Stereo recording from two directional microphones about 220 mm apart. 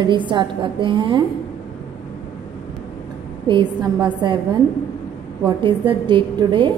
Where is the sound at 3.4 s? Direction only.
20° right (ahead or behind).